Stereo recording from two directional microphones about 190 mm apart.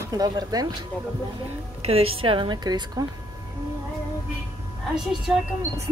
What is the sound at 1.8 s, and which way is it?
Speech, 30° right (ahead or behind).